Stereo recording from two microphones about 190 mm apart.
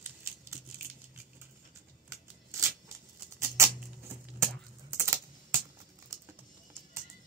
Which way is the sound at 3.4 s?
15° right (ahead or behind).